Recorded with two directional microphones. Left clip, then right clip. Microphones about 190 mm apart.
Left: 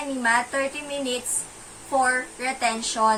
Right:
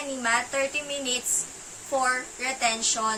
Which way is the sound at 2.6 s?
15° right (ahead or behind).